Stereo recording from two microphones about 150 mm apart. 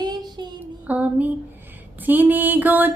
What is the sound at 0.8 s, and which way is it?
Music, 10° right (ahead or behind).